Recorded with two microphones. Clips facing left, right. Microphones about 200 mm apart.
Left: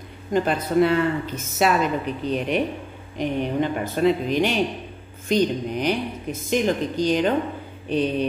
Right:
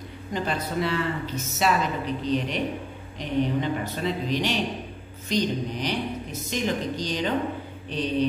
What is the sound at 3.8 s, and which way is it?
Speech, 50° left (ahead or behind).